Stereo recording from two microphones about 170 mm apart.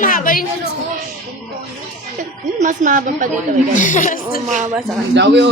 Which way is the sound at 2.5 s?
45° right (ahead or behind).